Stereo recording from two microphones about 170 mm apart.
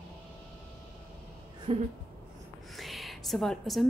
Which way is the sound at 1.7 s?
35° right (ahead or behind).